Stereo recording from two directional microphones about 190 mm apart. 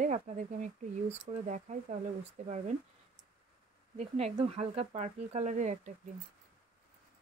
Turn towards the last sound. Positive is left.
turn(degrees=-40)  # may be behind; listen again after turning